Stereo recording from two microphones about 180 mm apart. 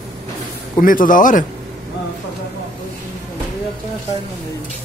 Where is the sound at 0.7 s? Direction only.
50° left (ahead or behind).